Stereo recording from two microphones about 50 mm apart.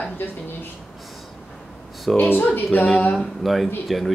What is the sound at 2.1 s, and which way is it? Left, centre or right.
Speech, left.